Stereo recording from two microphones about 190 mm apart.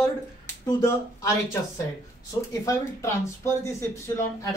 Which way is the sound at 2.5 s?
15° left (ahead or behind).